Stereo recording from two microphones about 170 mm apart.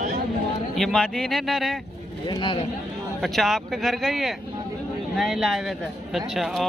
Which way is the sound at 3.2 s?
Centre (ahead or behind).